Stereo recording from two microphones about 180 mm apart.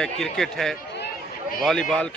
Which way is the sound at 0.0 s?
5° left (ahead or behind).